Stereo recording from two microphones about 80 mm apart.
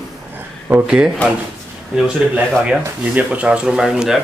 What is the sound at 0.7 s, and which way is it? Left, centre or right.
Speech, right.